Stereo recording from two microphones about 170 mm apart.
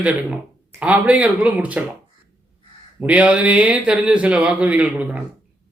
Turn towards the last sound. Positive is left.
turn(degrees=-10)  # may be behind; listen again after turning